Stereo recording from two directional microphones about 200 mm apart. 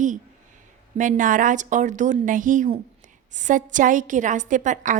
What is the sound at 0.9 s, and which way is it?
A woman's voice, 40° right (ahead or behind).